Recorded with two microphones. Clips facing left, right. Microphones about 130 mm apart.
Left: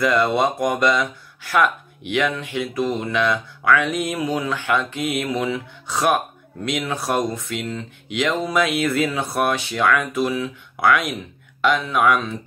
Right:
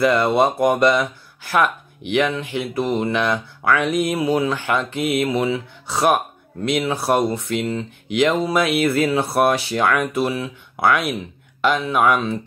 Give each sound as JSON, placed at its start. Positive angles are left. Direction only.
{"t": 0.0, "sound": "speech", "side_deg": -30}
{"t": 2.0, "sound": "speech", "side_deg": -30}
{"t": 5.3, "sound": "speech", "side_deg": -10}
{"t": 5.9, "sound": "speech", "side_deg": -30}